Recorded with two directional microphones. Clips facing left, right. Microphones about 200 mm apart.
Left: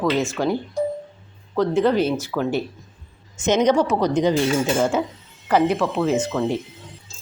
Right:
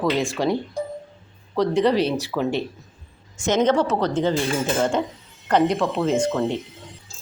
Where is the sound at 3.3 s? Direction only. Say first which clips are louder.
Left 2 dB; 20° left (ahead or behind).